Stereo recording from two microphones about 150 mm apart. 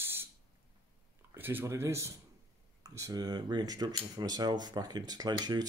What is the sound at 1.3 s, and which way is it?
Speech, 15° right (ahead or behind).